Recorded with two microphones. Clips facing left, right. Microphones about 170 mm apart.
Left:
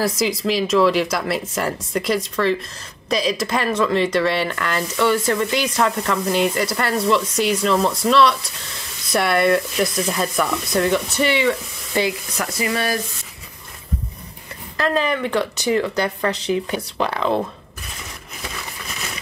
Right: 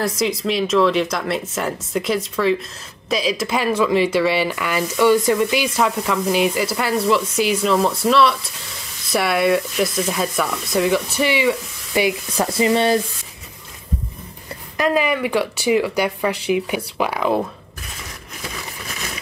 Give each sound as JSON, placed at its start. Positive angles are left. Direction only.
{"t": 0.0, "sound": "speech", "side_deg": 0}
{"t": 12.4, "sound": "stir", "side_deg": -30}
{"t": 14.8, "sound": "speech", "side_deg": -10}